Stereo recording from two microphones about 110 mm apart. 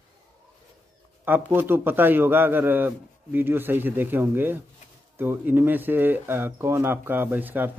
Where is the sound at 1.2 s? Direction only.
15° right (ahead or behind).